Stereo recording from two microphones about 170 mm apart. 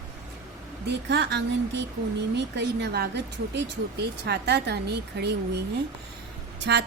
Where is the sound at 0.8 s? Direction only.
80° right.